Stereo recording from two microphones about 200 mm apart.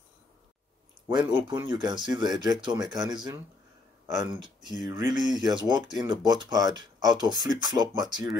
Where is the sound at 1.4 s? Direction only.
20° right (ahead or behind).